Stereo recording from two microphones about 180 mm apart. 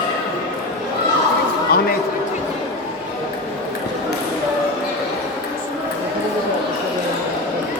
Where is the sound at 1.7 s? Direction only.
55° left (ahead or behind).